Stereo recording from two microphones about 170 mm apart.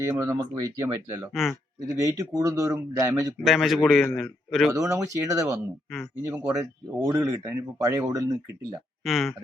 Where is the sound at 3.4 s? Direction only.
Centre (ahead or behind).